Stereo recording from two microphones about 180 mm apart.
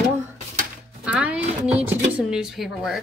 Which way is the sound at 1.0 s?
5° right (ahead or behind).